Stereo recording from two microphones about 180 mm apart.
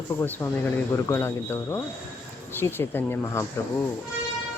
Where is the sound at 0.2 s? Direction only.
15° left (ahead or behind).